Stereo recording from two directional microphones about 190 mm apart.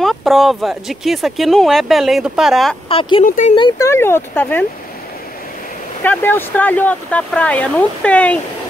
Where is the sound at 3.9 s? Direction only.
10° left (ahead or behind).